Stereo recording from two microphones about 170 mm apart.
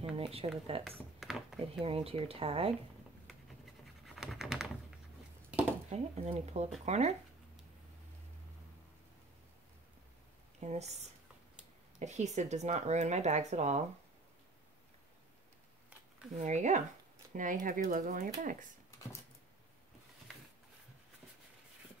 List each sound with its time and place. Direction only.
0.1 s speech: 35° right (ahead or behind)
0.8 s speech: centre (ahead or behind)
1.8 s speech: 35° right (ahead or behind)
4.0 s scratch: centre (ahead or behind)
5.9 s speech: 40° right (ahead or behind)
10.6 s speech: 40° right (ahead or behind)
12.0 s speech: 40° right (ahead or behind)
16.3 s speech: 45° right (ahead or behind)